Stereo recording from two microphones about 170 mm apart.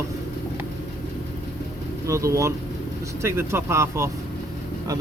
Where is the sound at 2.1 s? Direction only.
20° right (ahead or behind).